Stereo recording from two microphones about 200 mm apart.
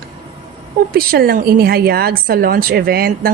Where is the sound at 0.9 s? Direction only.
50° right (ahead or behind).